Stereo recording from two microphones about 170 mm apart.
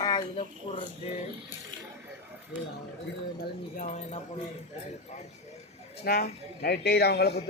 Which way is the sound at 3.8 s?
45° left (ahead or behind).